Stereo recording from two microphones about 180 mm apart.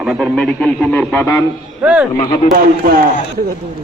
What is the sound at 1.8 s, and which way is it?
Speech, 10° right (ahead or behind).